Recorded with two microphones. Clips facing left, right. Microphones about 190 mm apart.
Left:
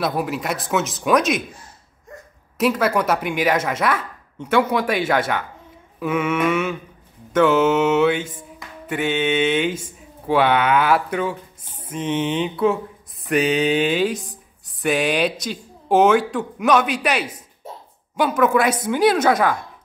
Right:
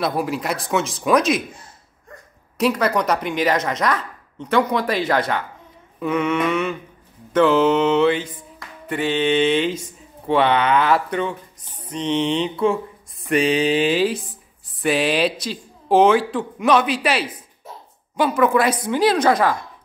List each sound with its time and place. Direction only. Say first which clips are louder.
0.0 s speech: right 1 dB; centre (ahead or behind)
2.5 s speech: even; 5° left (ahead or behind)
8.3 s music: left 1 dB; 25° left (ahead or behind)
8.8 s speech: right 1 dB; 5° left (ahead or behind)
11.8 s mantra: right 1 dB; 5° left (ahead or behind)
14.8 s speech: right 1 dB; 5° right (ahead or behind)